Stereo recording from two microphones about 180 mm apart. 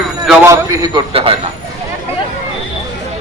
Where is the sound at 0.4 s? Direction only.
15° right (ahead or behind).